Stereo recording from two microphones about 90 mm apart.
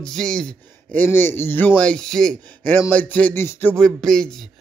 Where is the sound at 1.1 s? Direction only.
25° left (ahead or behind).